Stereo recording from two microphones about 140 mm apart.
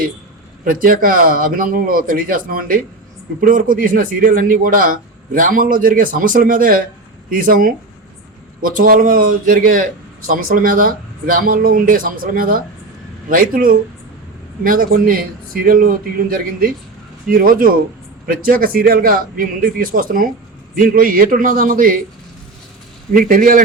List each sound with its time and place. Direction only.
0.6 s speech: 85° right
3.4 s a man's voice: 80° right
23.1 s a man's voice: 80° right